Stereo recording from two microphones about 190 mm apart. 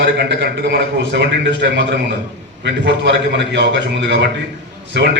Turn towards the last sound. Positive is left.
turn(degrees=-65)  # may be behind; listen again after turning